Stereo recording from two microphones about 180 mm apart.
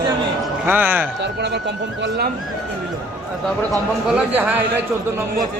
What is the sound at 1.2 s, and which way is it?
Speech, 70° right (ahead or behind).